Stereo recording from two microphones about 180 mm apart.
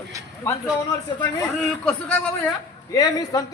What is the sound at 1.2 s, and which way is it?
A man's voice, 5° left (ahead or behind).